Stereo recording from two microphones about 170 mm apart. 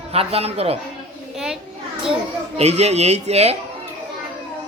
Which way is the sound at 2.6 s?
40° right (ahead or behind).